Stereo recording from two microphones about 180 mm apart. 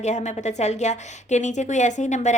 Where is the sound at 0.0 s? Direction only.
40° left (ahead or behind).